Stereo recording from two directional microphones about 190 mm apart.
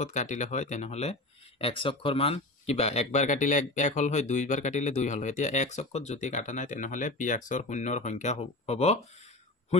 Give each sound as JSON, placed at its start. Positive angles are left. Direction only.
{"t": 0.0, "sound": "speech", "side_deg": 40}